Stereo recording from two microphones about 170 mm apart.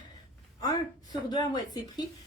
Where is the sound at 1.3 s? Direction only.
25° left (ahead or behind).